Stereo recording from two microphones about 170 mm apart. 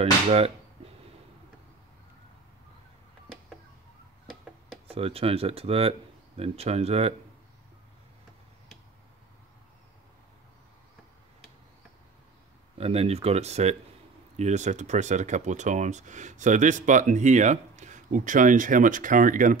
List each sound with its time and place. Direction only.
0.0 s speech: 35° right (ahead or behind)
4.8 s speech: 35° right (ahead or behind)
12.7 s speech: 35° right (ahead or behind); by 19.5 s 50° right (ahead or behind)